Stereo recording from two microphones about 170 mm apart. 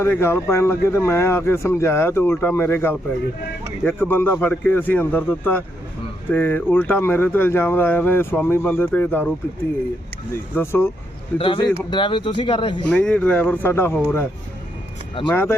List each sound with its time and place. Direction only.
0.0 s speech: 15° left (ahead or behind)
10.5 s speech: 15° left (ahead or behind)
11.3 s a man's voice: 30° left (ahead or behind)
12.9 s speech: 5° left (ahead or behind)
15.3 s speech: 15° left (ahead or behind)